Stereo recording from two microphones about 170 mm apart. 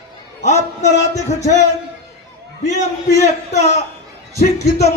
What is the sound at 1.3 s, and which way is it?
Speech, 45° left (ahead or behind).